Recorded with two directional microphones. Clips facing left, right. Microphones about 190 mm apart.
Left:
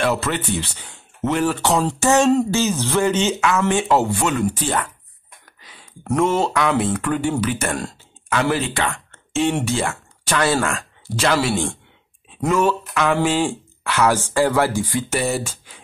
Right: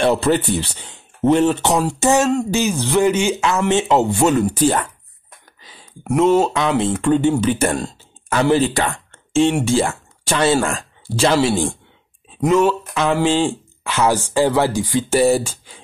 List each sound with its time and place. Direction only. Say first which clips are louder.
0.0 s speech: right 5 dB; 30° right (ahead or behind)
4.2 s speech: right 6 dB; 35° right (ahead or behind)
5.6 s a sound: right 2 dB; 35° right (ahead or behind)
6.1 s speech: right 4 dB; 15° right (ahead or behind); by 8.9 s 35° right (ahead or behind)
8.9 s a sound: right 6 dB; 30° right (ahead or behind)
9.7 s speech: right 5 dB; 30° right (ahead or behind)
12.4 s speech: right 3 dB; 15° right (ahead or behind)
15.0 s speech: right 7 dB; 35° right (ahead or behind)